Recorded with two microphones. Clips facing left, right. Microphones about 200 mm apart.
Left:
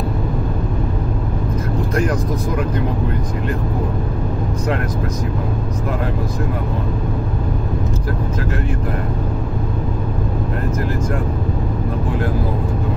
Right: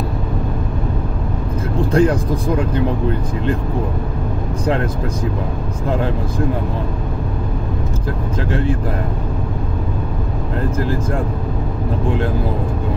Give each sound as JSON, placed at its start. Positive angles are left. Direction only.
{"t": 1.9, "sound": "speech", "side_deg": -30}
{"t": 8.5, "sound": "speech", "side_deg": -30}